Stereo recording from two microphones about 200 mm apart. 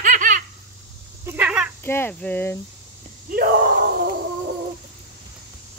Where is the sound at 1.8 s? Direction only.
10° left (ahead or behind).